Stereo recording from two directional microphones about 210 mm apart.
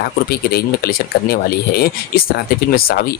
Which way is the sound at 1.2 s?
50° left (ahead or behind).